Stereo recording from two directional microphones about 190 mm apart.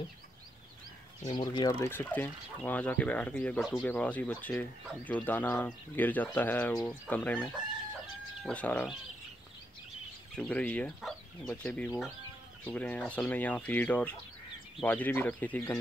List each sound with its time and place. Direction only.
1.2 s speech: 20° left (ahead or behind)
10.3 s speech: 5° left (ahead or behind)